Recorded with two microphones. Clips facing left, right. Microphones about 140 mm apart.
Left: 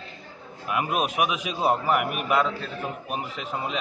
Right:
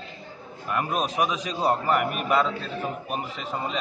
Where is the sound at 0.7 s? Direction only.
5° left (ahead or behind).